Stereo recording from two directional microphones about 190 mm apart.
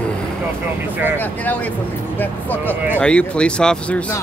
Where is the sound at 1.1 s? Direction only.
10° left (ahead or behind).